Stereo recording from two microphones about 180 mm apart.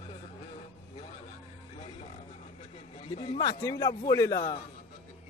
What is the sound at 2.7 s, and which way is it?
A man's voice, 35° left (ahead or behind).